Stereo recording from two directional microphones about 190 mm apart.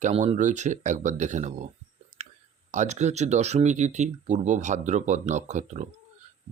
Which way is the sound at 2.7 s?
40° right (ahead or behind).